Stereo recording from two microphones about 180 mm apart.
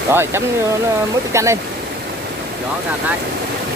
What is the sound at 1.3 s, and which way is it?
Speech, 15° right (ahead or behind).